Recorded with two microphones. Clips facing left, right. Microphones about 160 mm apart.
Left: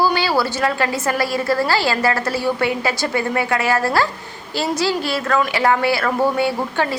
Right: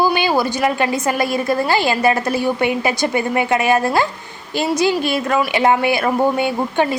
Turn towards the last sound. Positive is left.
turn(degrees=-20)  # may be behind; listen again after turning